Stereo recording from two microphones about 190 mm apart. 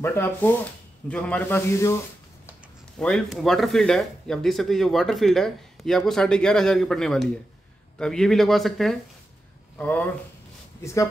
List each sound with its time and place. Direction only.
0.0 s speech: 10° left (ahead or behind)
3.0 s speech: centre (ahead or behind)